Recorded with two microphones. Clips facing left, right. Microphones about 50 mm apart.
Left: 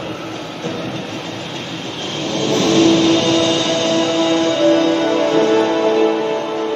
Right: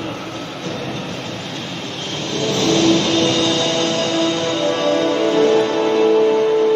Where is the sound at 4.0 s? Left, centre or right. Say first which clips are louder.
Left 3 dB; centre.